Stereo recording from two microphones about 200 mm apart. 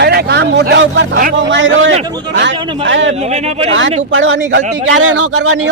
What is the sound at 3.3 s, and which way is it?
Speech, 35° right (ahead or behind).